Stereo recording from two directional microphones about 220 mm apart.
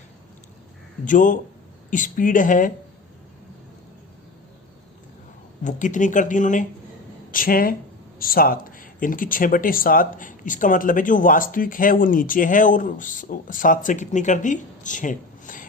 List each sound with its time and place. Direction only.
1.0 s speech: 35° left (ahead or behind)
5.6 s speech: 35° left (ahead or behind)